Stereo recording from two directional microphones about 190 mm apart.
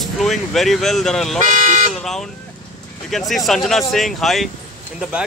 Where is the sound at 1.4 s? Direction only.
40° right (ahead or behind).